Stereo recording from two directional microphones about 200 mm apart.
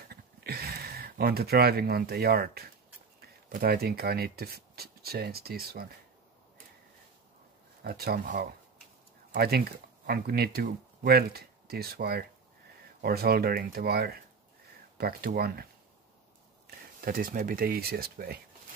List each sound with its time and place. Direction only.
0.1 s a sound: 50° right (ahead or behind)
3.2 s speech: 50° right (ahead or behind)
7.8 s speech: 50° right (ahead or behind)
17.0 s speech: 45° right (ahead or behind)